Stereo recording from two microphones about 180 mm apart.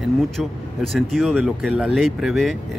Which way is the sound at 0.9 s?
Centre (ahead or behind).